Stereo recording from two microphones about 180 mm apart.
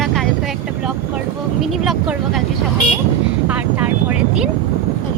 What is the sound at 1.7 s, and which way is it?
Speech, centre (ahead or behind).